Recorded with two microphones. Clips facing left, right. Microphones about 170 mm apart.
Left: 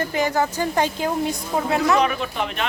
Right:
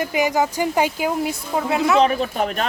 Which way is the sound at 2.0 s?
35° right (ahead or behind).